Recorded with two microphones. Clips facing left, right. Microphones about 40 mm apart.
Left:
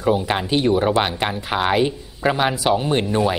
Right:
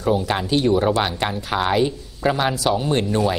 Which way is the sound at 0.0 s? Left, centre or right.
Centre.